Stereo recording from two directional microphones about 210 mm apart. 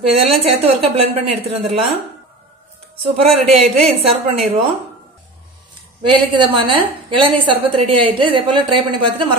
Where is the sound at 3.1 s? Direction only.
30° right (ahead or behind).